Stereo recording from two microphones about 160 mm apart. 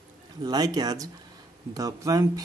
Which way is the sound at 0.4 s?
25° right (ahead or behind).